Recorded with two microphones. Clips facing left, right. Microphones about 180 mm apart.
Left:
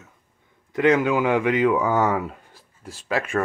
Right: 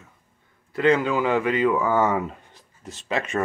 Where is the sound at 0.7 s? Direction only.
15° left (ahead or behind).